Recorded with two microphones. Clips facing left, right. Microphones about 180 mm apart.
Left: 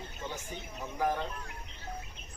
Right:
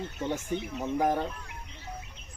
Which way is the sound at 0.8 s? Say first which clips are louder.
Right 4 dB; 50° right (ahead or behind).